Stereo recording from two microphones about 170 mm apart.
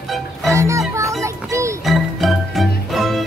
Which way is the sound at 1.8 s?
Centre (ahead or behind).